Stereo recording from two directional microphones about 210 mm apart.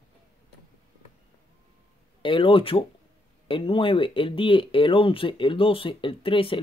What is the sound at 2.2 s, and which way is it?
Speech, 25° left (ahead or behind).